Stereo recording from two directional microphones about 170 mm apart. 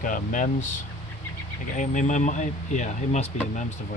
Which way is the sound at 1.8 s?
45° left (ahead or behind).